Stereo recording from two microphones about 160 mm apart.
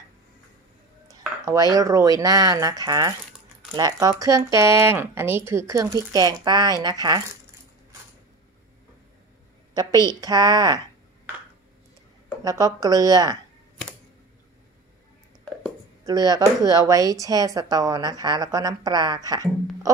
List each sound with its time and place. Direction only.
1.0 s speech: 20° right (ahead or behind)
9.8 s speech: 25° right (ahead or behind)
12.4 s speech: 20° right (ahead or behind)
16.1 s speech: 25° right (ahead or behind)